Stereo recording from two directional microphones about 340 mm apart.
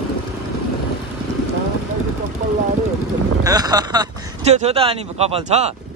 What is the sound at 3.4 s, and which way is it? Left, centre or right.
Speech, centre.